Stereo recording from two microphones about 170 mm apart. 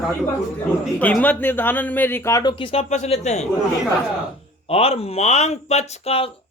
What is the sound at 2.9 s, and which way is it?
Speech, 45° left (ahead or behind).